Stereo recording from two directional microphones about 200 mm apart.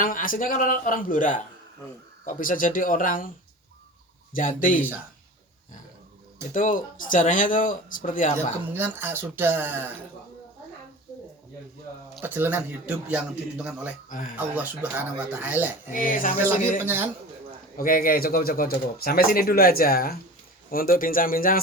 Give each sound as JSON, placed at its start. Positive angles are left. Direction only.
{"t": 0.0, "sound": "speech", "side_deg": 45}
{"t": 4.3, "sound": "speech", "side_deg": 40}
{"t": 6.5, "sound": "speech", "side_deg": 40}
{"t": 8.7, "sound": "speech", "side_deg": -10}
{"t": 12.1, "sound": "speech", "side_deg": -10}
{"t": 14.1, "sound": "speech", "side_deg": 40}
{"t": 14.3, "sound": "speech", "side_deg": -10}
{"t": 15.9, "sound": "speech", "side_deg": 40}
{"t": 16.8, "sound": "speech", "side_deg": -10}
{"t": 17.7, "sound": "speech", "side_deg": 45}